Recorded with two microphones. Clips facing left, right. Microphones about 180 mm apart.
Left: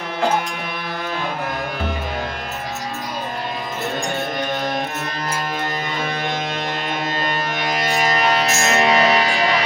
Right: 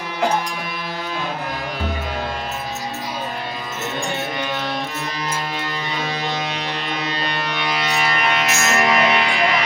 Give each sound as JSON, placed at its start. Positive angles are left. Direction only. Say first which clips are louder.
{"t": 7.6, "sound": "music", "louder": "left 2 dB", "side_deg": 45}